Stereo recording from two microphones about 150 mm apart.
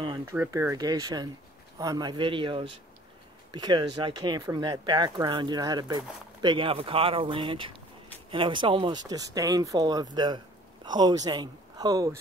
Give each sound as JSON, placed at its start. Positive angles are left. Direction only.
{"t": 0.2, "sound": "speech", "side_deg": -15}